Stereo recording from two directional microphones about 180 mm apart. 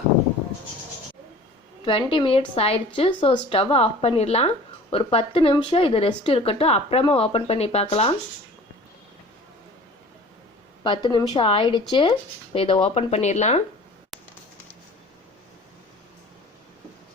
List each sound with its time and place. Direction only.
1.8 s a woman's voice: 30° left (ahead or behind)
10.8 s a woman's voice: 25° left (ahead or behind)